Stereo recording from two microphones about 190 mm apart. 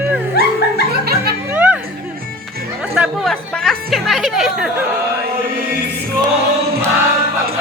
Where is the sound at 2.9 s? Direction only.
Centre (ahead or behind).